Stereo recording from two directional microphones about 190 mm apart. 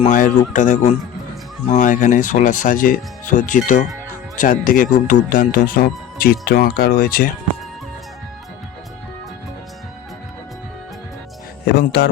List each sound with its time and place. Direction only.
0.0 s speech: 40° left (ahead or behind)
11.6 s speech: 55° left (ahead or behind)